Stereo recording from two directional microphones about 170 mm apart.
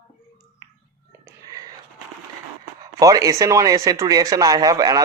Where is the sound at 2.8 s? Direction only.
20° right (ahead or behind).